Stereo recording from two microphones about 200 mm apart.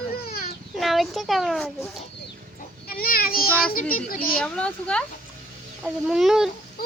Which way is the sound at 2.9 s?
50° left (ahead or behind).